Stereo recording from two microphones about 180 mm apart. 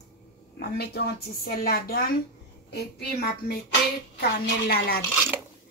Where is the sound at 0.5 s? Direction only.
60° left (ahead or behind).